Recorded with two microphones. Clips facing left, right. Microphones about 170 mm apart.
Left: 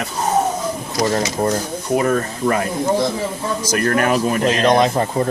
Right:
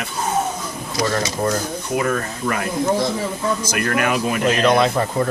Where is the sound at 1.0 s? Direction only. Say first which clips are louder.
Left 3 dB; 25° left (ahead or behind).